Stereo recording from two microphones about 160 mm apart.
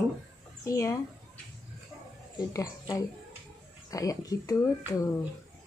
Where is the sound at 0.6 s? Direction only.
20° left (ahead or behind).